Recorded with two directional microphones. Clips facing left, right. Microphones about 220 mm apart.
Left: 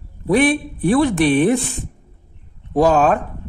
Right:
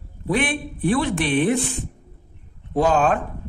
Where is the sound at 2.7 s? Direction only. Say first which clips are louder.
Left 4 dB; 40° left (ahead or behind).